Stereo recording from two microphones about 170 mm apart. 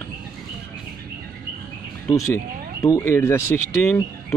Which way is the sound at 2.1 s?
20° left (ahead or behind).